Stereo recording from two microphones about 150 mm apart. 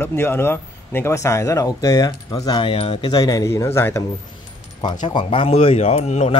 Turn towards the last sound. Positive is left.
turn(degrees=45)  # may be behind; listen again after turning